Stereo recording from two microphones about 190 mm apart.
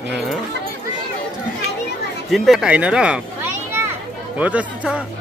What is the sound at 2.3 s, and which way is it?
Speech, centre (ahead or behind).